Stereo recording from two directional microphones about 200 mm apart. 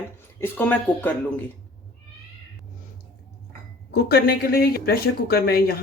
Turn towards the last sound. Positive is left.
turn(degrees=50)  # may be behind; listen again after turning